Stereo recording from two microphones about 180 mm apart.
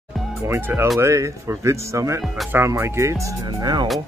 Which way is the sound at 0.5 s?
15° right (ahead or behind).